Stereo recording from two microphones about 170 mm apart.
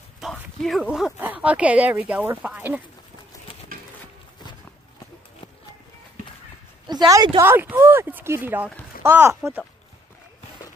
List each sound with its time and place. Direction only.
0.2 s a sound: centre (ahead or behind)
1.1 s speech: 10° right (ahead or behind)
6.9 s a woman's voice: 25° right (ahead or behind)
7.3 s speech: 10° right (ahead or behind)